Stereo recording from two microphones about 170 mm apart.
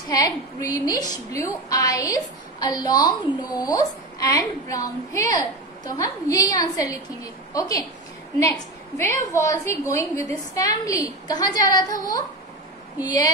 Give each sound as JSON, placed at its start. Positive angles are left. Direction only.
{"t": 0.1, "sound": "a woman's voice", "side_deg": 20}